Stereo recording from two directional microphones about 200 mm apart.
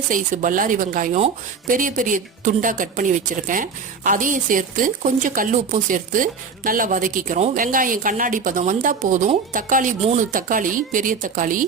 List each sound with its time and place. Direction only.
0.1 s speech: 40° right (ahead or behind)